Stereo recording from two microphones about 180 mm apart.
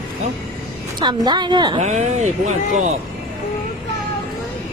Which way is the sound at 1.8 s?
40° right (ahead or behind).